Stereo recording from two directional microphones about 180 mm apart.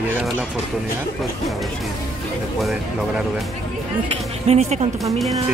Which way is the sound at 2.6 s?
Centre (ahead or behind).